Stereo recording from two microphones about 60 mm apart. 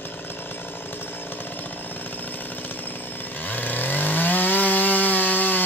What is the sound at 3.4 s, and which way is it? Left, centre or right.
Chainsaw, left.